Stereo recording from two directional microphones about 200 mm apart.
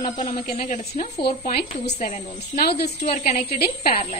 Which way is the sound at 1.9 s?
35° left (ahead or behind).